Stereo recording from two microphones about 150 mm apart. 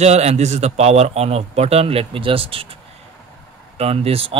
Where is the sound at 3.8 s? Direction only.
40° right (ahead or behind).